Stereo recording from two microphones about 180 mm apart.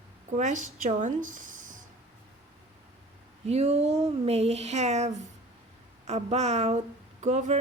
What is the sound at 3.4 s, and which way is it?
Speech, 35° right (ahead or behind).